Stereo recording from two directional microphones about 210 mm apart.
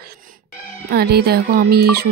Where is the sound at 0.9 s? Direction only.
50° right (ahead or behind).